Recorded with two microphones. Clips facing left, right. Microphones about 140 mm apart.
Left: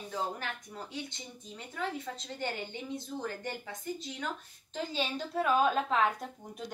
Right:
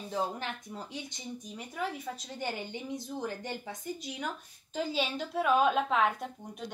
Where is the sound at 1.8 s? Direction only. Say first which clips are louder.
Even; 10° right (ahead or behind).